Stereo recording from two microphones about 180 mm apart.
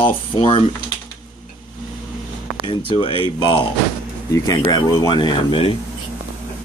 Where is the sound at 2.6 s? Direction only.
30° left (ahead or behind).